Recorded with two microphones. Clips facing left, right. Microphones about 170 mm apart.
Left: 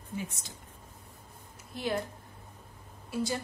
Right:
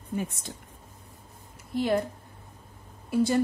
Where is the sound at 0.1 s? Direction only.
55° right (ahead or behind).